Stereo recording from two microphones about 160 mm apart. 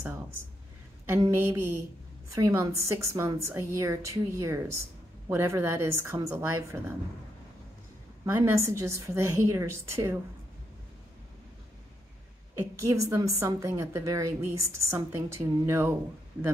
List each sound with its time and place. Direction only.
0.0 s a woman's voice: 15° right (ahead or behind)
8.3 s a woman's voice: 15° right (ahead or behind)
12.5 s a woman's voice: 20° right (ahead or behind)